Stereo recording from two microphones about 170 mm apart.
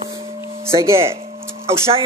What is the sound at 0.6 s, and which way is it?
Speech, 15° right (ahead or behind).